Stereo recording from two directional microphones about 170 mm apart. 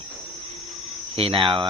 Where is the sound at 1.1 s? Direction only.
35° right (ahead or behind).